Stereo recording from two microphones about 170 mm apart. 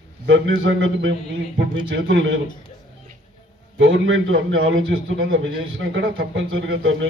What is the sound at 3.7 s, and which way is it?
A man's voice, 90° right.